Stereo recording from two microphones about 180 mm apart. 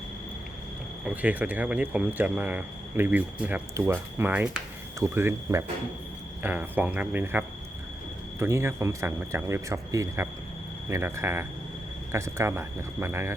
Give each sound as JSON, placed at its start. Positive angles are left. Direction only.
{"t": 1.0, "sound": "speech", "side_deg": -10}